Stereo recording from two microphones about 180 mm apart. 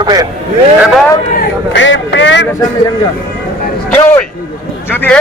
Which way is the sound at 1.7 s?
90° left.